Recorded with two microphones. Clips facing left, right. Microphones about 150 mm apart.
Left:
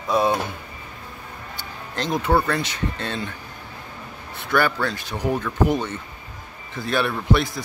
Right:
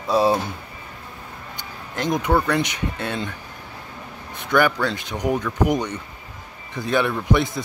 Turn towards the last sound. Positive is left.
turn(degrees=-20)  # may be behind; listen again after turning